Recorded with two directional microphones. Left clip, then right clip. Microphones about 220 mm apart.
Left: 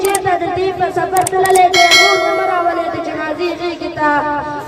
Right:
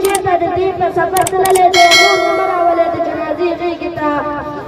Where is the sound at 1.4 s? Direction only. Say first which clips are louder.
Right 1 dB; centre (ahead or behind).